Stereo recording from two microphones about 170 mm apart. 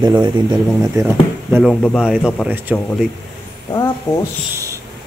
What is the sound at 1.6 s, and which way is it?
Speech, centre (ahead or behind).